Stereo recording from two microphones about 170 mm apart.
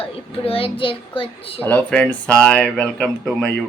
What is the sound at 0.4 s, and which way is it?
A child's voice, 35° left (ahead or behind).